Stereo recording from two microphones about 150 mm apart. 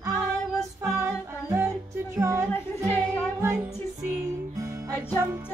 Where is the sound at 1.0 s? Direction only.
15° right (ahead or behind).